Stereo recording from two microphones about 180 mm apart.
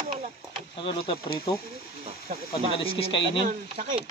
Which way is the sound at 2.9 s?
30° left (ahead or behind).